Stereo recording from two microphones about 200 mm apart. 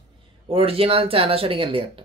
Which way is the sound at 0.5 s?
30° right (ahead or behind).